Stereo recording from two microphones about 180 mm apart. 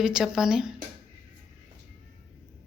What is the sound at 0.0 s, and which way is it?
Speech, 5° right (ahead or behind).